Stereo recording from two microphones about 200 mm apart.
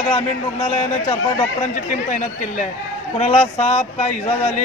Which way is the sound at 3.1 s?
30° left (ahead or behind).